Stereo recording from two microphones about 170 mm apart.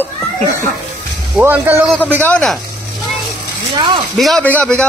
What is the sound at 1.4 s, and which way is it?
Speech, 15° right (ahead or behind).